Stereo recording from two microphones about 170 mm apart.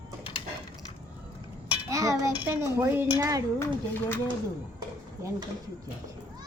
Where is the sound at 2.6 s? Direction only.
15° right (ahead or behind).